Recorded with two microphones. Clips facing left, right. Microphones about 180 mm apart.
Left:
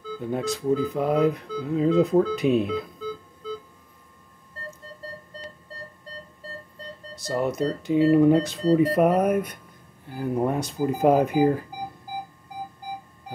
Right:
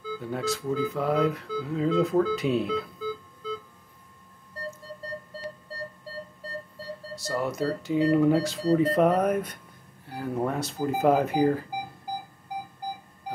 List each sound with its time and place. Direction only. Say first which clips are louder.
0.2 s speech: left 4 dB; 20° left (ahead or behind)
3.0 s organ: even; 5° right (ahead or behind)
7.2 s speech: left 4 dB; 20° left (ahead or behind)